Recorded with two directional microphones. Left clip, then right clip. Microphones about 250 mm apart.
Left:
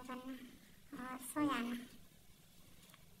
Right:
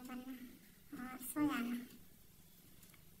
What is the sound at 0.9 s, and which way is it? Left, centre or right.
Speech, centre.